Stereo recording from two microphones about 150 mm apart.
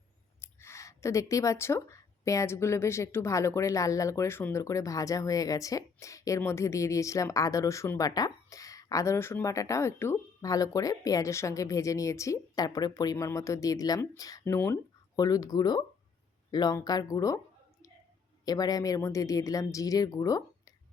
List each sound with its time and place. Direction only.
0.4 s speech: 20° left (ahead or behind)
18.4 s speech: 25° left (ahead or behind)